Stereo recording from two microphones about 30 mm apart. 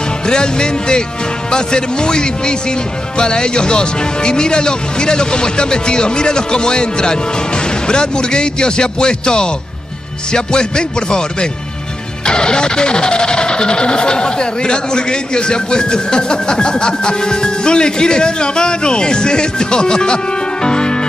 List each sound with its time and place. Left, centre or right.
0.3 s speech: left
12.3 s speech: left
20.6 s music: left